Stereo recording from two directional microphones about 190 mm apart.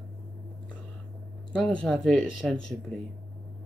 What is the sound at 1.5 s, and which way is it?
Speech, 5° left (ahead or behind).